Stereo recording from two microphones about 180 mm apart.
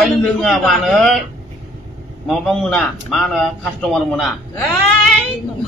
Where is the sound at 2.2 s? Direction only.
Centre (ahead or behind).